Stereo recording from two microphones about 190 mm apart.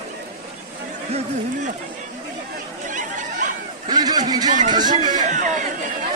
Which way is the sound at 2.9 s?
40° right (ahead or behind).